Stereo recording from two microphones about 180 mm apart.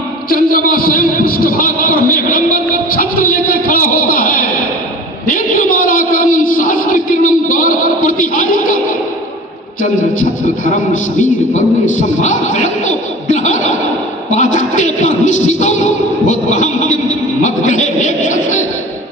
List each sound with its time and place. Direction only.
0.3 s a man's voice: 50° left (ahead or behind)
5.2 s a sound: 50° left (ahead or behind)
10.9 s a man's voice: 45° left (ahead or behind)